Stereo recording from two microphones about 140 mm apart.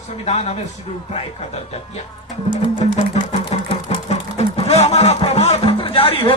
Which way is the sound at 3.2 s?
55° left (ahead or behind).